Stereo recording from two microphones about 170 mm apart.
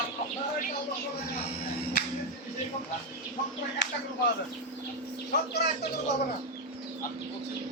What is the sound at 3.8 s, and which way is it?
Speech, 90° left.